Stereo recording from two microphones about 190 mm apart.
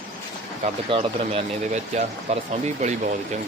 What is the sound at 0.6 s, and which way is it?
Speech, 30° right (ahead or behind).